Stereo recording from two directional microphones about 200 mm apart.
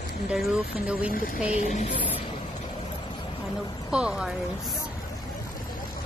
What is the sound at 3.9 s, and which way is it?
Speech, 5° right (ahead or behind).